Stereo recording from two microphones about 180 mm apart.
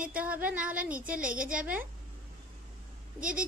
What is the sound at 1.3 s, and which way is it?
Speech, 50° right (ahead or behind).